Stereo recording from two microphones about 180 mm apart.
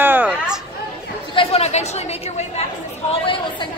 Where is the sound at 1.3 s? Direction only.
30° left (ahead or behind).